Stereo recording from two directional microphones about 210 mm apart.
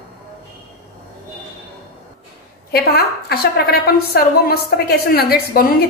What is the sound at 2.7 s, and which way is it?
A woman's voice, 45° left (ahead or behind).